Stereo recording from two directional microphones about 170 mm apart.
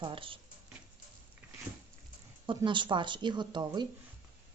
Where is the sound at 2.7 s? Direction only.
30° right (ahead or behind).